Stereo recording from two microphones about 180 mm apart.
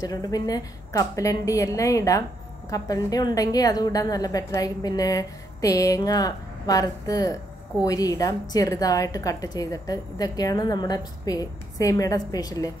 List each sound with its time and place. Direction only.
0.0 s a woman's voice: 20° left (ahead or behind)